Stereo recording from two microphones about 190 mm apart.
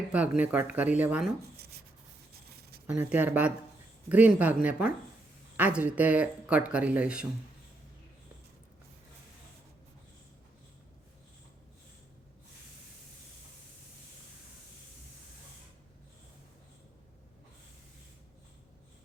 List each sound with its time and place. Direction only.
0.1 s speech: 5° right (ahead or behind)
2.8 s speech: 10° right (ahead or behind)